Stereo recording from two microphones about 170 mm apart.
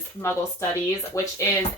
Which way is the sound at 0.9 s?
20° left (ahead or behind).